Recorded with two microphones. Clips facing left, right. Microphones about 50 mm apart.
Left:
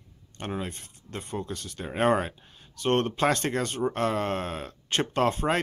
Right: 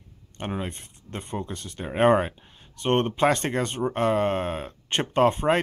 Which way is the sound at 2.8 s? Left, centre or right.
Right.